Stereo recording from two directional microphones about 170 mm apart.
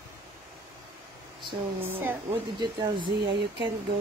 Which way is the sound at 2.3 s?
25° right (ahead or behind).